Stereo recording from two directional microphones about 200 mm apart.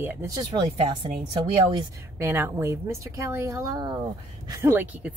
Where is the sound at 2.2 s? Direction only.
10° right (ahead or behind).